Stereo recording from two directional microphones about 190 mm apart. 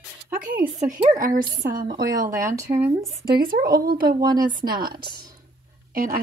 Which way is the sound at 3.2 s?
50° right (ahead or behind).